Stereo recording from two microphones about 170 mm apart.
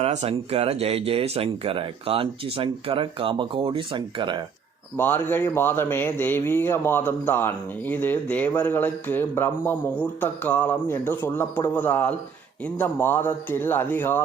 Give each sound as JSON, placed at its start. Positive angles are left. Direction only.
{"t": 0.0, "sound": "speech", "side_deg": -40}
{"t": 4.9, "sound": "a man's voice", "side_deg": 10}